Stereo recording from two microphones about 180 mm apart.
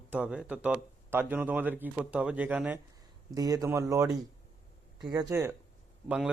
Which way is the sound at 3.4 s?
20° right (ahead or behind).